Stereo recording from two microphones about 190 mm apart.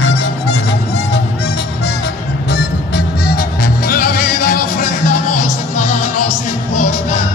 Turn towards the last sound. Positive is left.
turn(degrees=40)  # may be behind; listen again after turning